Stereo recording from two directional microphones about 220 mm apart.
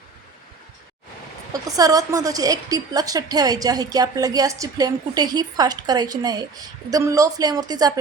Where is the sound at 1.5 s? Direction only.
15° right (ahead or behind).